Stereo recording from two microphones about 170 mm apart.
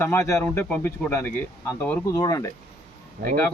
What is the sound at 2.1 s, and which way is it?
Speech, 20° left (ahead or behind).